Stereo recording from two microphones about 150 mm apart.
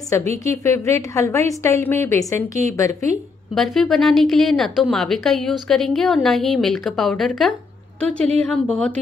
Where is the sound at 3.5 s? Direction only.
Centre (ahead or behind).